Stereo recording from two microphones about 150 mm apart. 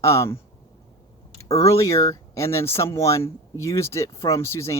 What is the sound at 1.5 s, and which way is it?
Speech, 20° left (ahead or behind).